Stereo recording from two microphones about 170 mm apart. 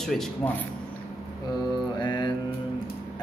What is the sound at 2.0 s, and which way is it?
Music, 25° left (ahead or behind).